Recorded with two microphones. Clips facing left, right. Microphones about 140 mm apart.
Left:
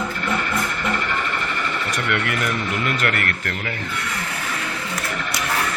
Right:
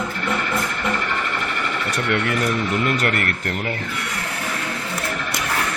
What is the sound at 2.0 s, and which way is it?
Speech, 30° right (ahead or behind).